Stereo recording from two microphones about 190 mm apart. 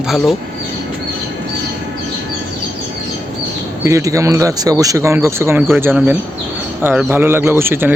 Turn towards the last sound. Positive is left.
turn(degrees=-10)  # may be behind; listen again after turning